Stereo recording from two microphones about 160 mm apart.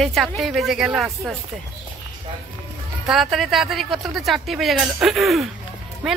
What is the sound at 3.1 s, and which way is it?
Speech, centre (ahead or behind).